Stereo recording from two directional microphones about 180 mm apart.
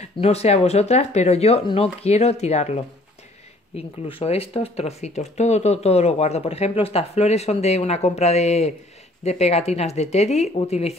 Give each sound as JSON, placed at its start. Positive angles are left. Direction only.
{"t": 0.0, "sound": "speech", "side_deg": 35}